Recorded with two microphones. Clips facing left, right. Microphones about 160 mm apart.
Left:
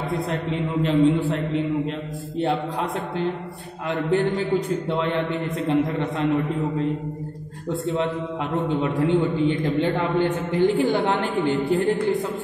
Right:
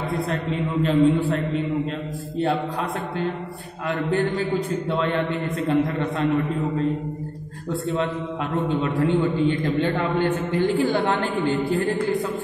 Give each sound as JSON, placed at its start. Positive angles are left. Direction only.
{"t": 0.3, "sound": "a man's voice", "side_deg": 20}
{"t": 8.6, "sound": "a man's voice", "side_deg": 15}